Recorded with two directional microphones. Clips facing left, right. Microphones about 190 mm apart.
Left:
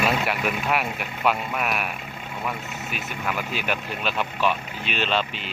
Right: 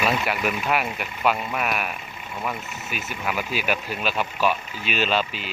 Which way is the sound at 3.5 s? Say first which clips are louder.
Right 2 dB; 5° right (ahead or behind).